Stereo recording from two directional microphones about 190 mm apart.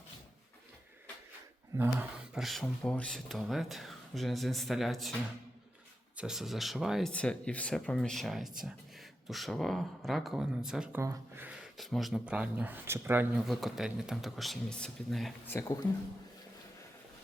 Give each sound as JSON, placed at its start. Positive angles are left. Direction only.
{"t": 1.7, "sound": "speech", "side_deg": -10}
{"t": 6.1, "sound": "speech", "side_deg": 0}
{"t": 15.4, "sound": "speech", "side_deg": 15}